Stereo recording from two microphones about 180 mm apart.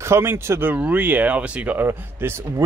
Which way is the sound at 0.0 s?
15° right (ahead or behind).